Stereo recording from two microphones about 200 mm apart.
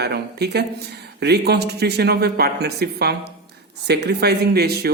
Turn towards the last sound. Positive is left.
turn(degrees=-50)  # may be behind; listen again after turning